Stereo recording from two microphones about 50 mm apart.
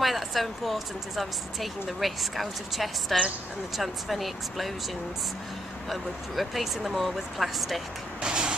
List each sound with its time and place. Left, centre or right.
0.0 s speech: centre
5.9 s speech: centre
8.2 s vehicle: centre